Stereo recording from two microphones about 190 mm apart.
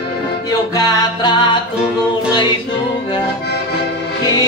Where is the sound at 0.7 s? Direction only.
25° left (ahead or behind).